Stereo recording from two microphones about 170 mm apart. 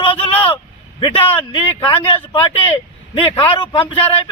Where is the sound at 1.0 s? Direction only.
30° left (ahead or behind).